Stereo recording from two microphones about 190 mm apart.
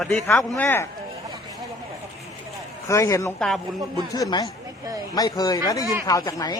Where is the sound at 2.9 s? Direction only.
15° left (ahead or behind).